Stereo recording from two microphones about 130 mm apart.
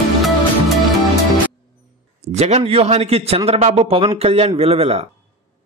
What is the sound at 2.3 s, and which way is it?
A man's voice, 55° right (ahead or behind).